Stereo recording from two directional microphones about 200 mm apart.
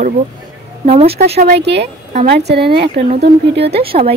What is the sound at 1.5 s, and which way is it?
Speech, 60° right (ahead or behind).